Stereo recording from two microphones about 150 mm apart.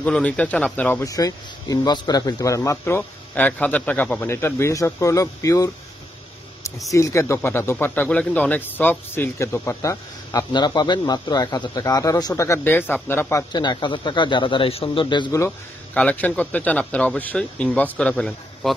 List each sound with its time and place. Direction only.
0.0 s speech: 10° left (ahead or behind)
6.9 s speech: 20° left (ahead or behind)
13.5 s speech: 30° left (ahead or behind)
15.4 s speech: 10° left (ahead or behind)